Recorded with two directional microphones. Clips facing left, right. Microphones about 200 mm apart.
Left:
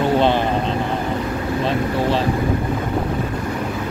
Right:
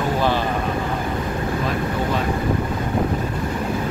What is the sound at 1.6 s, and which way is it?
Speech, 30° left (ahead or behind).